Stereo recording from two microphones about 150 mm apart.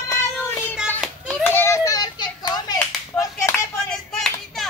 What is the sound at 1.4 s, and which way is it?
Hands, 15° left (ahead or behind).